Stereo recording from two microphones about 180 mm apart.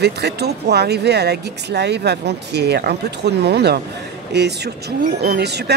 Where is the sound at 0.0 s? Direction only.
65° right (ahead or behind).